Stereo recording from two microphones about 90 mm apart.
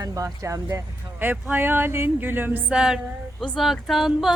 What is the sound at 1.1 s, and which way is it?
Speech, 25° right (ahead or behind).